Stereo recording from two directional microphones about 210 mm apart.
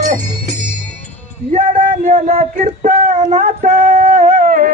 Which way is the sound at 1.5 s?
30° right (ahead or behind).